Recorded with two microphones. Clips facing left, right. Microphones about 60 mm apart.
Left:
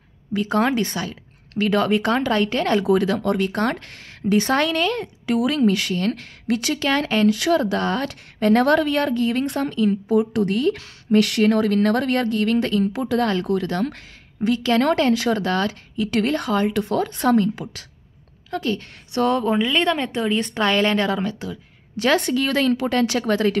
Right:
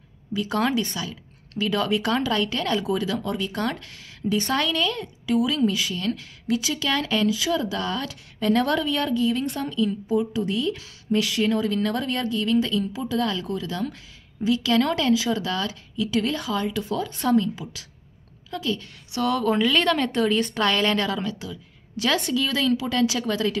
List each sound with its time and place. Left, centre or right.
0.3 s a woman's voice: left
5.0 s a woman's voice: left
7.2 s a woman's voice: left
14.4 s a woman's voice: left
19.5 s a woman's voice: centre; by 23.5 s left